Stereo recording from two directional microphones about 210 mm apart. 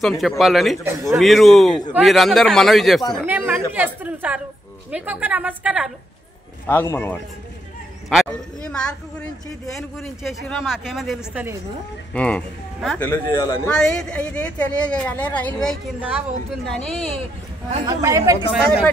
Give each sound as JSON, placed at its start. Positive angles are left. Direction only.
{"t": 0.4, "sound": "a man's voice", "side_deg": 0}
{"t": 6.7, "sound": "a man's voice", "side_deg": 10}
{"t": 13.7, "sound": "a man's voice", "side_deg": 5}
{"t": 17.8, "sound": "a woman's voice", "side_deg": -15}